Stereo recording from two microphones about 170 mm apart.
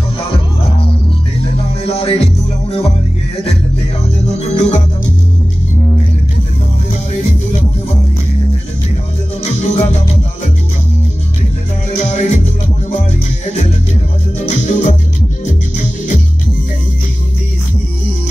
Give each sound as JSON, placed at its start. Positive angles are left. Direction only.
{"t": 1.9, "sound": "music", "side_deg": 35}
{"t": 4.4, "sound": "music", "side_deg": 40}
{"t": 9.6, "sound": "music", "side_deg": 40}
{"t": 12.0, "sound": "music", "side_deg": 40}
{"t": 14.4, "sound": "music", "side_deg": 45}